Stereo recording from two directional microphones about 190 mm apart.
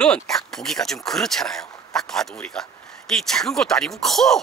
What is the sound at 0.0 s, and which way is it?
Speech, 5° left (ahead or behind).